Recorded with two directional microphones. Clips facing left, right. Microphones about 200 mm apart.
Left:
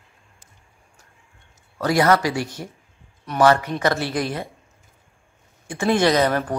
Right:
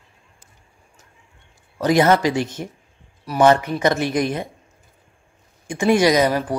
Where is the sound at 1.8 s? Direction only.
20° right (ahead or behind).